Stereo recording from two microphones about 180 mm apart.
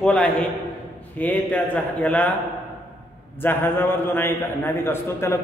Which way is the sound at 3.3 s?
10° left (ahead or behind).